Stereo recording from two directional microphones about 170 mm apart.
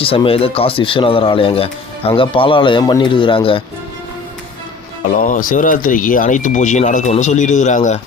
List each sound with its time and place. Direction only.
0.0 s speech: 35° left (ahead or behind)
5.1 s speech: 50° left (ahead or behind)